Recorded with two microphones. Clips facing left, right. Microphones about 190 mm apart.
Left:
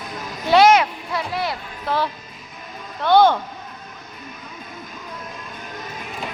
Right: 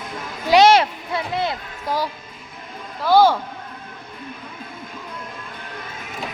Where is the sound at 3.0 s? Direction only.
5° right (ahead or behind).